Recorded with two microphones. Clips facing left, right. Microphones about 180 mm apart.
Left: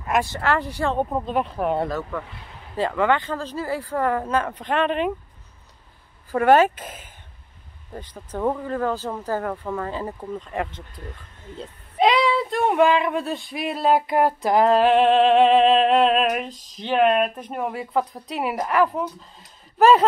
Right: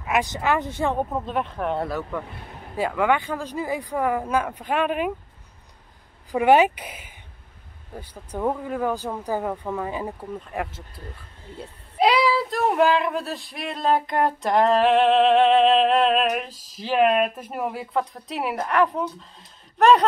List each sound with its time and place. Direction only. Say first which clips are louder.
0.2 s speech: even; 15° right (ahead or behind)
1.2 s speech: left 3 dB; centre (ahead or behind)
1.9 s speech: left 1 dB; 10° right (ahead or behind)
2.2 s vehicle: right 3 dB; 50° right (ahead or behind)
2.7 s speech: left 1 dB; 10° right (ahead or behind)
6.3 s speech: left 1 dB; 15° right (ahead or behind); by 20.1 s centre (ahead or behind)